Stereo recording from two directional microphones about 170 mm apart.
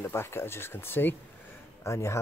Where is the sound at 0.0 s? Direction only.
15° left (ahead or behind).